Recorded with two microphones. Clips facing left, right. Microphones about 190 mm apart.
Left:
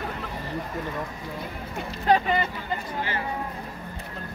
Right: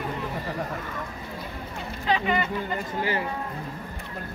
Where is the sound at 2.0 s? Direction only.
45° left (ahead or behind).